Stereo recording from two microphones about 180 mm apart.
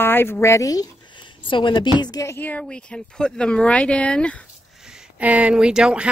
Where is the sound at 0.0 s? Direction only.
10° left (ahead or behind).